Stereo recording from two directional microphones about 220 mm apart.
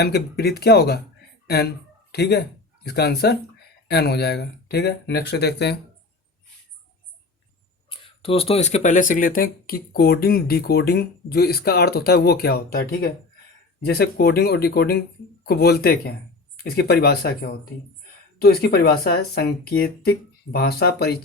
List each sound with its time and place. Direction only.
0.0 s speech: 45° left (ahead or behind)
7.9 s speech: 25° left (ahead or behind); by 21.1 s 45° left (ahead or behind)